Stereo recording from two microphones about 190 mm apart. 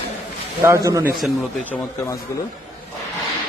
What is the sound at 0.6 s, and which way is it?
Speech, 15° right (ahead or behind).